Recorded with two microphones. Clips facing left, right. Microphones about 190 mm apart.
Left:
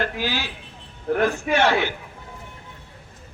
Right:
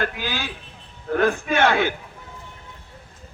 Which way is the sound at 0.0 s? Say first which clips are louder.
Left 1 dB; 50° right (ahead or behind).